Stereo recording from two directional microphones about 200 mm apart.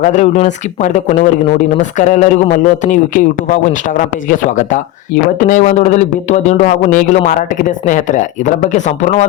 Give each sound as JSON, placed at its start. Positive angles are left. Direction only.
{"t": 0.0, "sound": "speech", "side_deg": 35}
{"t": 7.9, "sound": "speech", "side_deg": 40}